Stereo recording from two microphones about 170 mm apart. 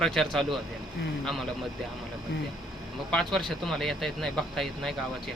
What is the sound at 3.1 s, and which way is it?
Speech, centre (ahead or behind).